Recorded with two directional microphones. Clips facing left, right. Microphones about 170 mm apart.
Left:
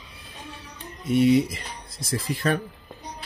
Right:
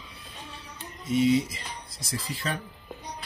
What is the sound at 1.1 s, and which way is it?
Speech, 60° left (ahead or behind).